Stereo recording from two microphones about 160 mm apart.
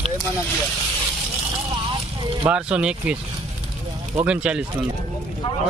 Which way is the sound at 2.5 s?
5° right (ahead or behind).